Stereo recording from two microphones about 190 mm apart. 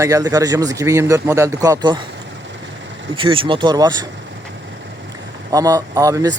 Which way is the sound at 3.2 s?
25° right (ahead or behind).